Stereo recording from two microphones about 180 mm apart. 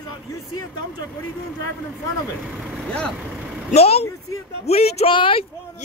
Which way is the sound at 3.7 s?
35° left (ahead or behind).